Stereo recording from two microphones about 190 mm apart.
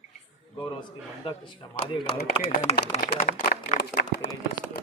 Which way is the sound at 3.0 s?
50° left (ahead or behind).